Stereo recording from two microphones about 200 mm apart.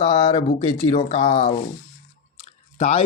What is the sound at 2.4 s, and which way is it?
Chewing, 30° left (ahead or behind).